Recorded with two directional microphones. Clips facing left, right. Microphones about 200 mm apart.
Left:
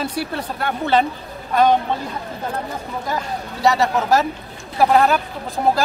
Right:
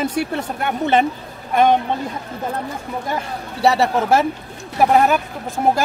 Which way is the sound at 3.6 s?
30° right (ahead or behind).